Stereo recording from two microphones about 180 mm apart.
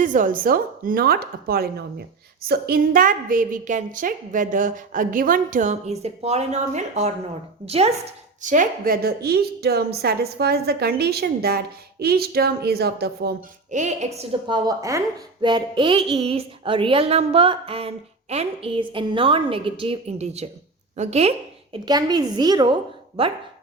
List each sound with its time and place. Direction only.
0.0 s a woman's voice: 45° right (ahead or behind); by 13.3 s 60° right (ahead or behind)
13.7 s speech: 40° right (ahead or behind)
21.8 s speech: 20° right (ahead or behind)